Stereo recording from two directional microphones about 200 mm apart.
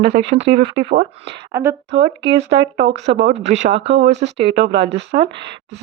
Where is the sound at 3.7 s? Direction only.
60° right (ahead or behind).